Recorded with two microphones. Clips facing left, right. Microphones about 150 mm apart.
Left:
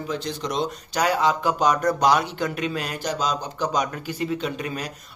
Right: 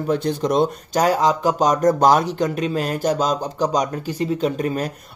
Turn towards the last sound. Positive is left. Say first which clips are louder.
# right 7 dB
turn(degrees=-45)  # may be behind; listen again after turning